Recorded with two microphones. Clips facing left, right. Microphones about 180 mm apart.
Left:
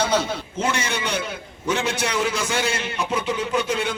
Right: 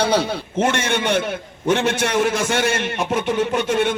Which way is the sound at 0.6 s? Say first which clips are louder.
Right 6 dB; 55° right (ahead or behind).